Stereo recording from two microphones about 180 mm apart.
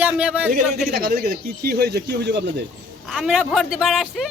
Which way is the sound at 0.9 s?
60° right (ahead or behind).